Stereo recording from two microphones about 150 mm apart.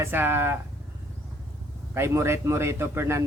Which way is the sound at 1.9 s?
15° right (ahead or behind).